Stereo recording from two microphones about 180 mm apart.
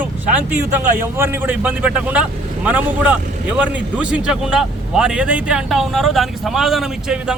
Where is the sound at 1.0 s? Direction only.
15° right (ahead or behind).